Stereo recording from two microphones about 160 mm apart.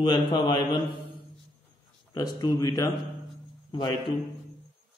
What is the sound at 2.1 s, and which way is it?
Speech, 25° left (ahead or behind).